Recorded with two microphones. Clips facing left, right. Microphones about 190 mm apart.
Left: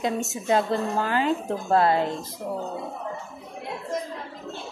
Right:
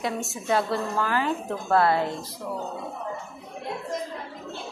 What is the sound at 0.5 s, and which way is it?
A woman's voice, 20° left (ahead or behind).